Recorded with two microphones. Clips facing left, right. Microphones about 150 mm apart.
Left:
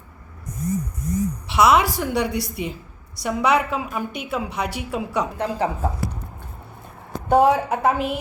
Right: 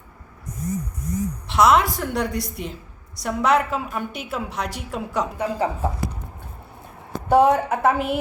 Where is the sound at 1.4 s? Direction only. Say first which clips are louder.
Even; 5° left (ahead or behind).